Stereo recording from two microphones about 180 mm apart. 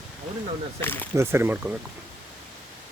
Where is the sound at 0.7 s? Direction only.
10° left (ahead or behind).